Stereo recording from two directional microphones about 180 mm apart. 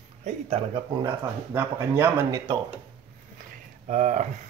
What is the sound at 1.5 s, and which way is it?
Speech, 10° right (ahead or behind).